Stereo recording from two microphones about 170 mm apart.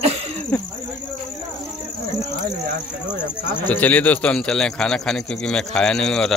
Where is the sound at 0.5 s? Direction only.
10° left (ahead or behind).